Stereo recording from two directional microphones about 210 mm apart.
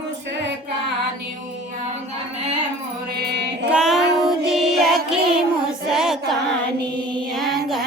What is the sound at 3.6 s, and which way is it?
Child singing, 5° right (ahead or behind).